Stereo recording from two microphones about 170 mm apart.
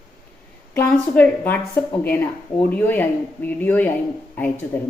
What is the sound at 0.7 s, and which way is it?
A woman's voice, 10° left (ahead or behind).